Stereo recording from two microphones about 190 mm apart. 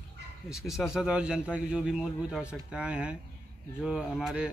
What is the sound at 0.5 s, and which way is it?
A man's voice, centre (ahead or behind).